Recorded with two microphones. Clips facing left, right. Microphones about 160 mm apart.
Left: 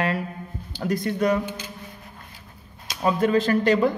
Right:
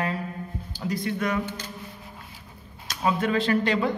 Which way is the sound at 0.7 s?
55° left (ahead or behind).